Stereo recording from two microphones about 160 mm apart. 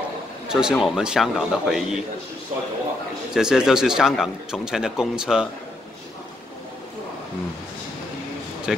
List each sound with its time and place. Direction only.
0.5 s a man's voice: 5° right (ahead or behind)
3.3 s a man's voice: 5° right (ahead or behind)
8.7 s a man's voice: 5° right (ahead or behind)